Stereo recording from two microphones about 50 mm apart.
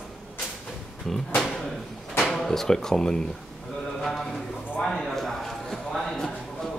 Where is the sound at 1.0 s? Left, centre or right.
Centre.